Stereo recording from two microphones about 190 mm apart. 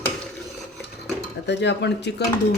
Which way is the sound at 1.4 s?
65° left (ahead or behind).